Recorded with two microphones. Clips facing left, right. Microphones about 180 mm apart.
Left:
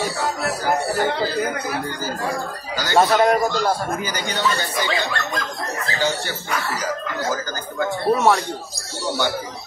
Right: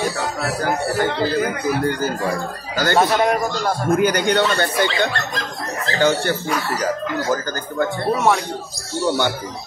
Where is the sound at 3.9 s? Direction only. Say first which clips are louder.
Right 9 dB; 60° right (ahead or behind).